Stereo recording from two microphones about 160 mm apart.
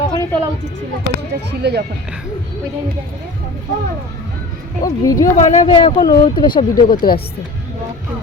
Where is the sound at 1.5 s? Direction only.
90° right.